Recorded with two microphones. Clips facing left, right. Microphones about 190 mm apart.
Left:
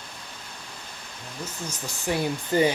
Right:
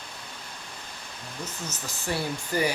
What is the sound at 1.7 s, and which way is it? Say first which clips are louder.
Speech: left 4 dB; 15° left (ahead or behind).